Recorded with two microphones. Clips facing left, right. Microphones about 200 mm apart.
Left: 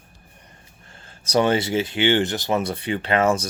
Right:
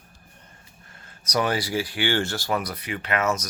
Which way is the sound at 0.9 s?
30° left (ahead or behind).